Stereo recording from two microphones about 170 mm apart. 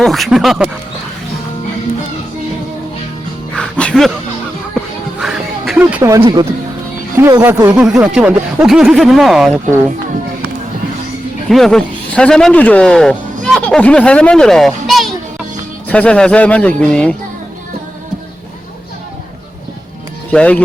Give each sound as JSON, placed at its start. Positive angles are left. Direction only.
{"t": 0.0, "sound": "speech", "side_deg": 0}
{"t": 3.5, "sound": "music", "side_deg": 5}
{"t": 5.2, "sound": "a sound", "side_deg": 0}
{"t": 5.8, "sound": "speech", "side_deg": -15}
{"t": 7.8, "sound": "speech", "side_deg": -5}
{"t": 11.4, "sound": "speech", "side_deg": 0}
{"t": 20.3, "sound": "speech", "side_deg": 5}